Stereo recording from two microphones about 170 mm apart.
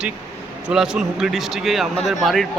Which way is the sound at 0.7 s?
5° right (ahead or behind).